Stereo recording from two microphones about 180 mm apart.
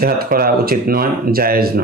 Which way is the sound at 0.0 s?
55° right (ahead or behind).